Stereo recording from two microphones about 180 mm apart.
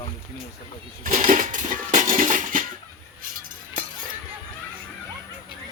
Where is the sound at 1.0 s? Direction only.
45° right (ahead or behind).